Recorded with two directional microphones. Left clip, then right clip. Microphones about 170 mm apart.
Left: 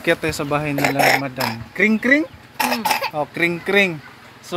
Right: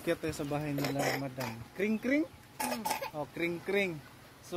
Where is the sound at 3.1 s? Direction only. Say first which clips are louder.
Left 15 dB; 5° left (ahead or behind).